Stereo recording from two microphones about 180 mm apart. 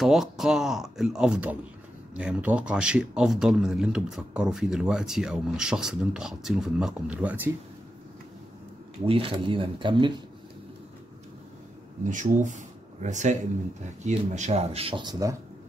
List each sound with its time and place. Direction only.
0.0 s speech: centre (ahead or behind)
9.0 s speech: 30° right (ahead or behind)
12.1 s speech: 45° right (ahead or behind); by 15.3 s 20° right (ahead or behind)